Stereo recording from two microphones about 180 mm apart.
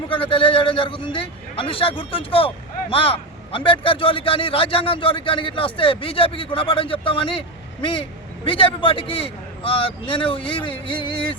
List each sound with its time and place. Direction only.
0.1 s a man's voice: 30° left (ahead or behind)